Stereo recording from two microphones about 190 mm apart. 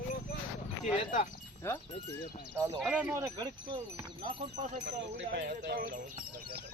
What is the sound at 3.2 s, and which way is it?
Speech, 20° right (ahead or behind).